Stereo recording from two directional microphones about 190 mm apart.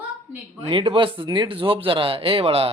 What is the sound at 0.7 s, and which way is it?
Speech, 25° right (ahead or behind).